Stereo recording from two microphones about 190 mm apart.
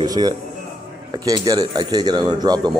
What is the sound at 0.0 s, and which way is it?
Speech, 20° right (ahead or behind).